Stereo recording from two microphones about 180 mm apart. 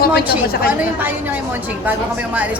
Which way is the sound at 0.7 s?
10° right (ahead or behind).